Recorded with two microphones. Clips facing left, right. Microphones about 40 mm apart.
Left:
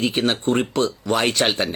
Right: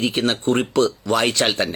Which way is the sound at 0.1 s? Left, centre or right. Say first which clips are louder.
Right 1 dB; left.